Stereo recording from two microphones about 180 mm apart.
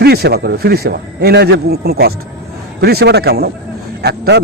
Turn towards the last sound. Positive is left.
turn(degrees=-65)  # may be behind; listen again after turning